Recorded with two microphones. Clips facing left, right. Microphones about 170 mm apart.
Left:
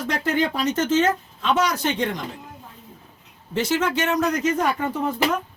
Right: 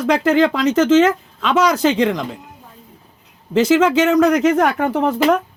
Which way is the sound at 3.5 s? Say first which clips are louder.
Right 9 dB; 90° right.